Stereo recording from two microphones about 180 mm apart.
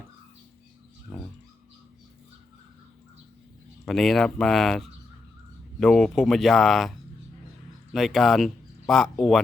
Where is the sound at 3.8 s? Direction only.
Centre (ahead or behind).